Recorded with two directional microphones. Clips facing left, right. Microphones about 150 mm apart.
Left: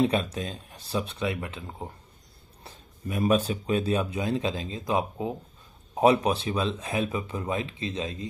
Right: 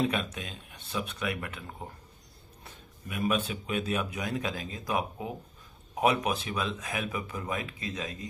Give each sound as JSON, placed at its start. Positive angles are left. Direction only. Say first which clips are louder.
{"t": 0.0, "sound": "speech", "louder": "left 5 dB", "side_deg": 35}
{"t": 2.6, "sound": "speech", "louder": "left 8 dB", "side_deg": 35}